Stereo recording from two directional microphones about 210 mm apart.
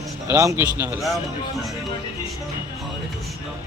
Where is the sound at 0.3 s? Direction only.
15° right (ahead or behind).